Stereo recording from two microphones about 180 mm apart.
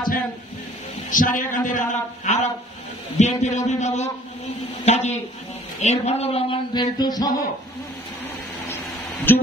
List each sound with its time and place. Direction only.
1.1 s a man's voice: 45° left (ahead or behind)
5.8 s a sound: 40° left (ahead or behind); by 7.4 s 20° left (ahead or behind)
9.3 s speech: 10° left (ahead or behind)